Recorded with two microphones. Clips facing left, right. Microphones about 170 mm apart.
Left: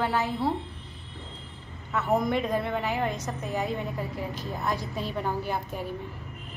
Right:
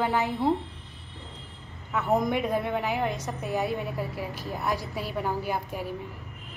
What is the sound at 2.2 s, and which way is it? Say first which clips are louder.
A woman's voice: even; 10° right (ahead or behind).